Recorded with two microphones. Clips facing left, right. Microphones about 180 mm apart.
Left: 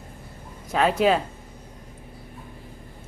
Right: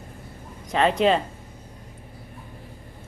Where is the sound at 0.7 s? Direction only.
5° left (ahead or behind).